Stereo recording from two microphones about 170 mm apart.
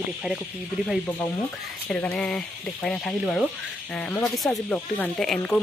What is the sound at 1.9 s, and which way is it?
Speech, 5° left (ahead or behind).